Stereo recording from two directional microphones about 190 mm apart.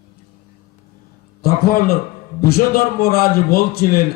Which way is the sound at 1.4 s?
55° left (ahead or behind).